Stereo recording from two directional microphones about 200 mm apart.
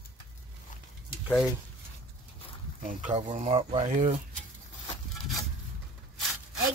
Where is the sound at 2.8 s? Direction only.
40° right (ahead or behind).